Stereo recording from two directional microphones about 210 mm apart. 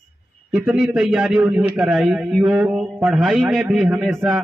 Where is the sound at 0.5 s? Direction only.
Centre (ahead or behind).